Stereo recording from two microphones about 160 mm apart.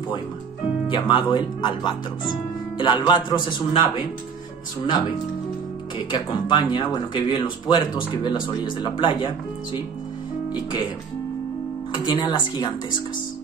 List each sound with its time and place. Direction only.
0.8 s speech: 30° left (ahead or behind)
5.9 s speech: 30° left (ahead or behind)
10.5 s speech: 30° left (ahead or behind)
11.9 s speech: 30° left (ahead or behind)